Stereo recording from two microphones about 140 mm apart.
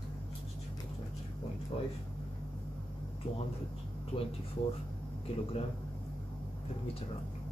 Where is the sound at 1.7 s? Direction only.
40° left (ahead or behind).